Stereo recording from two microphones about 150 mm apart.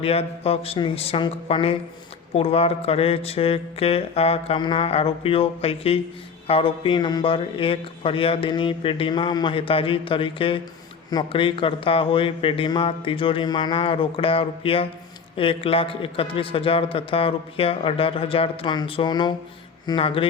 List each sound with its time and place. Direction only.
0.0 s speech: 40° left (ahead or behind)